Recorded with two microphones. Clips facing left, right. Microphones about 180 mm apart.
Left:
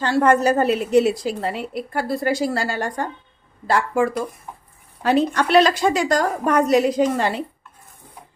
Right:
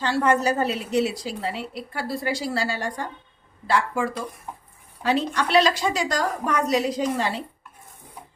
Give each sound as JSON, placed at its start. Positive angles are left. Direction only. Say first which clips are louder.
{"t": 0.0, "sound": "a woman's voice", "louder": "left 4 dB", "side_deg": 50}